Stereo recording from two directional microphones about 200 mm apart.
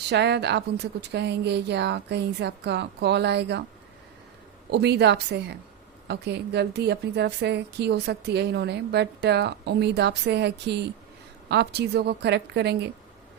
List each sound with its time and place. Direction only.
0.1 s a woman's voice: 60° right (ahead or behind)
4.7 s a woman's voice: 55° right (ahead or behind)